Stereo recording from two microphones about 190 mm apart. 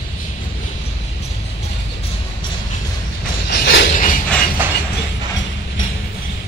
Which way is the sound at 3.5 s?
70° left (ahead or behind).